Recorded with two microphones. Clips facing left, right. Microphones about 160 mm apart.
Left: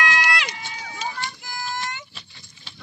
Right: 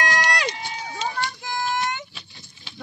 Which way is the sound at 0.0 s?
40° right (ahead or behind).